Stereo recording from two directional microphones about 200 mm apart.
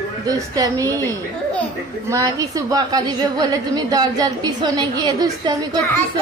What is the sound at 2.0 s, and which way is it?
A woman's voice, 15° right (ahead or behind).